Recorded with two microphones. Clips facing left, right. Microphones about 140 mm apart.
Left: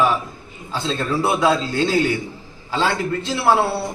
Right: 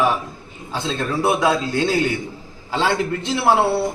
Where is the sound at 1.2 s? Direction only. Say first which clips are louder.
Even; 15° right (ahead or behind).